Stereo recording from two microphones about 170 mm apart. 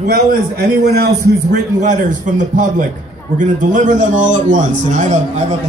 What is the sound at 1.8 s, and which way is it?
A man's voice, 45° right (ahead or behind).